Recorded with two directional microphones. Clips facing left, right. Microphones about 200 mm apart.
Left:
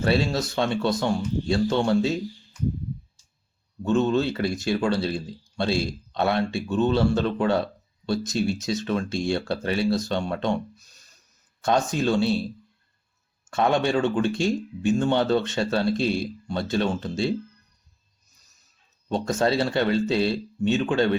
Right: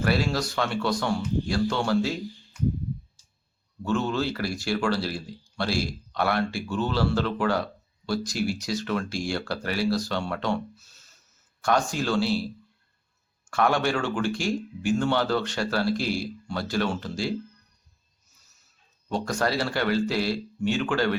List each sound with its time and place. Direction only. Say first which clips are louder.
0.0 s speech: left 2 dB; 25° left (ahead or behind)
3.8 s speech: left 5 dB; 20° left (ahead or behind)
13.5 s speech: left 2 dB; 20° left (ahead or behind)
18.6 s speech: right 1 dB; 20° left (ahead or behind)